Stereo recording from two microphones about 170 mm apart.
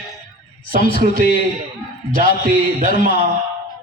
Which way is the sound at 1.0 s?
55° right (ahead or behind).